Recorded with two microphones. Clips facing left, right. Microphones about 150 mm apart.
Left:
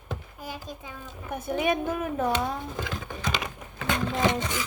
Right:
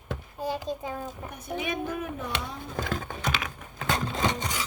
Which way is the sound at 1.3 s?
50° left (ahead or behind).